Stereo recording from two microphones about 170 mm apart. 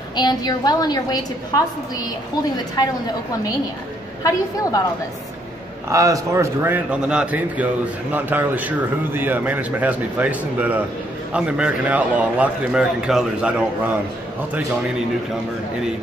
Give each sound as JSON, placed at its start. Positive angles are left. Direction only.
{"t": 0.1, "sound": "a woman's voice", "side_deg": 25}
{"t": 4.2, "sound": "a woman's voice", "side_deg": 20}
{"t": 5.9, "sound": "a man's voice", "side_deg": -20}